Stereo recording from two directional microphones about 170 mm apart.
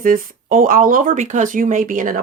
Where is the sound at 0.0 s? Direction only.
55° right (ahead or behind).